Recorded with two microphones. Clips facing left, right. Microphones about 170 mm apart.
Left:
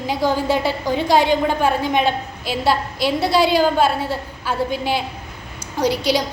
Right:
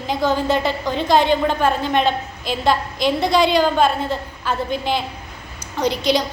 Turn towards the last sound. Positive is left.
turn(degrees=10)  # may be behind; listen again after turning